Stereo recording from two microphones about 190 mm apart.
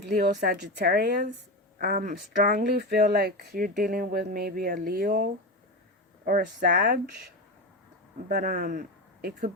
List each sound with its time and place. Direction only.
0.2 s speech: 50° right (ahead or behind)
8.3 s speech: 50° right (ahead or behind)